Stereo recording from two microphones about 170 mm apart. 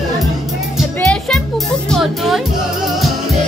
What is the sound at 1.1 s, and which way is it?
Music, 5° left (ahead or behind).